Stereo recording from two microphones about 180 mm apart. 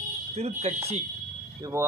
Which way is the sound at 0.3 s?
35° right (ahead or behind).